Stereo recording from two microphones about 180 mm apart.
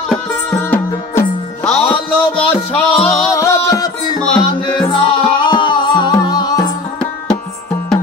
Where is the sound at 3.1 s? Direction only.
15° left (ahead or behind).